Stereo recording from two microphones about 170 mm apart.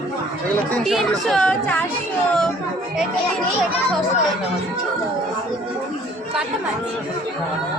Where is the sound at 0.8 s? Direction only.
Centre (ahead or behind).